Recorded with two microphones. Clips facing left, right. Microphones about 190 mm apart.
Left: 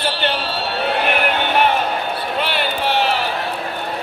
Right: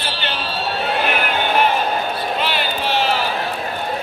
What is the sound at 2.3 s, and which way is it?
Run, 60° left (ahead or behind).